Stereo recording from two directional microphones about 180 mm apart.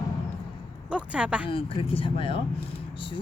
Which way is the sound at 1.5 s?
30° left (ahead or behind).